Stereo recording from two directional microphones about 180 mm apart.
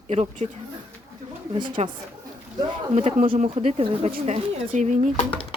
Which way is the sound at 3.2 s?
50° right (ahead or behind).